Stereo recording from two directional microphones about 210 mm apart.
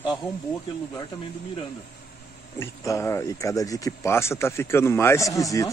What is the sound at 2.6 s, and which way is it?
Speech, 15° left (ahead or behind).